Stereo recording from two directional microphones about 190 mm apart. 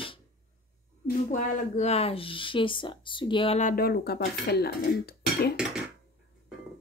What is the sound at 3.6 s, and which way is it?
Speech, 50° left (ahead or behind).